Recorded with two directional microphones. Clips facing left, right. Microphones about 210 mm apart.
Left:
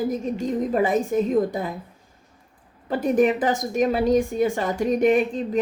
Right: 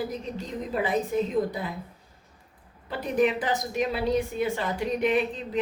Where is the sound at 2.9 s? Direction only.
45° left (ahead or behind).